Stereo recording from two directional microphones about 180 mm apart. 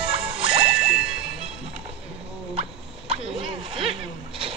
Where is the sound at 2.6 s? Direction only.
30° right (ahead or behind).